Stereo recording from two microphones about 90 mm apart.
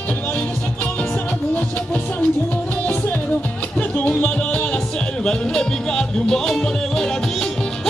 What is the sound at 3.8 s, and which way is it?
Music, 15° left (ahead or behind).